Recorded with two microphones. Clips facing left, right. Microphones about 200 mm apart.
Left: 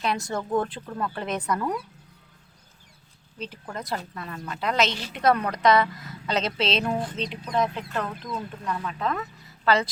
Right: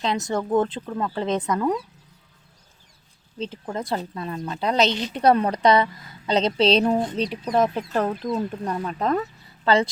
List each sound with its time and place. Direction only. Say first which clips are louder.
0.0 s speech: right 3 dB; 20° right (ahead or behind)
3.3 s speech: right 6 dB; 25° right (ahead or behind)
7.4 s speech: right 4 dB; 45° right (ahead or behind); by 9.9 s 25° right (ahead or behind)